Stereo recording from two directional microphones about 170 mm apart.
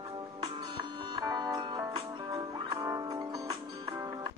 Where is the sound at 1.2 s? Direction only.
20° right (ahead or behind).